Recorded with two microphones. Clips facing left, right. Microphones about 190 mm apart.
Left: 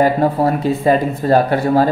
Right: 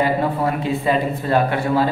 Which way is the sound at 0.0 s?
40° left (ahead or behind).